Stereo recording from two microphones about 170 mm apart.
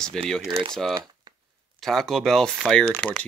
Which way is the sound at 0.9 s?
25° right (ahead or behind).